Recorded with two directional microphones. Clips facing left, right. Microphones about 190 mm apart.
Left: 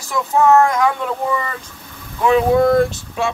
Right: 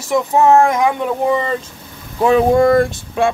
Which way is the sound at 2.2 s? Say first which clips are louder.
Right 2 dB; 50° right (ahead or behind).